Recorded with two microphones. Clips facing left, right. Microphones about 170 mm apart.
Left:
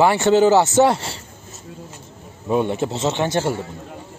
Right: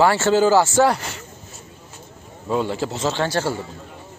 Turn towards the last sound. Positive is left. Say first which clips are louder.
# left 2 dB
turn(degrees=20)  # may be behind; listen again after turning